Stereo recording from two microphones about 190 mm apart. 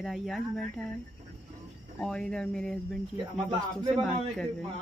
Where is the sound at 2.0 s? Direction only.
5° left (ahead or behind).